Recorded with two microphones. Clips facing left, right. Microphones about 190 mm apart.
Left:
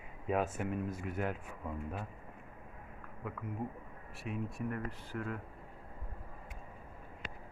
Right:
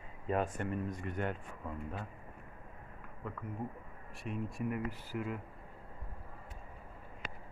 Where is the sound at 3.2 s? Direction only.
5° left (ahead or behind).